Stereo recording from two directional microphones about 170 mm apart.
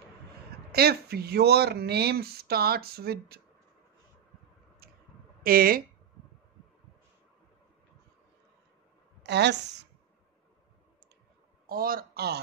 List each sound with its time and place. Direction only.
0.7 s speech: 70° right (ahead or behind)
5.4 s speech: 60° right (ahead or behind)
9.2 s a woman's voice: 80° right
11.6 s a man's voice: 60° right (ahead or behind)